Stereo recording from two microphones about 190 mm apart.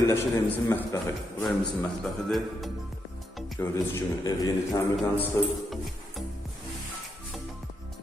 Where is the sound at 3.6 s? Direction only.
15° left (ahead or behind).